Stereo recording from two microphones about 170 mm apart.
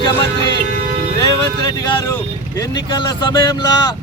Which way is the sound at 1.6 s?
20° left (ahead or behind).